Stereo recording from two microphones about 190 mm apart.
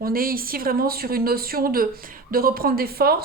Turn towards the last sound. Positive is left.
turn(degrees=-55)  # may be behind; listen again after turning